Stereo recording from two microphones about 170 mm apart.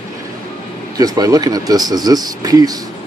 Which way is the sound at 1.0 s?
20° right (ahead or behind).